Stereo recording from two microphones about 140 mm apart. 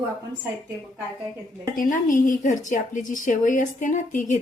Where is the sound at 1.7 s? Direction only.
75° left (ahead or behind).